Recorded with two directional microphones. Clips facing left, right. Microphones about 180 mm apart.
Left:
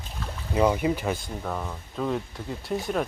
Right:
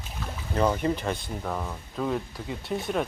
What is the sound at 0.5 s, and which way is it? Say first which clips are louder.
Speech: left 2 dB; 10° left (ahead or behind).